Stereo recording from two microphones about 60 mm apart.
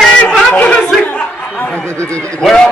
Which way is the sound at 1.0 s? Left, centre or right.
Left.